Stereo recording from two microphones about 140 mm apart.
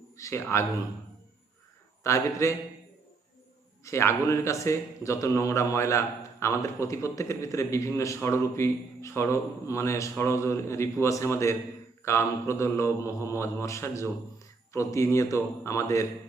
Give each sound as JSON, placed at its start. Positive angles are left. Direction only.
{"t": 0.2, "sound": "a man's voice", "side_deg": 20}
{"t": 2.0, "sound": "a man's voice", "side_deg": 20}
{"t": 3.8, "sound": "a man's voice", "side_deg": 20}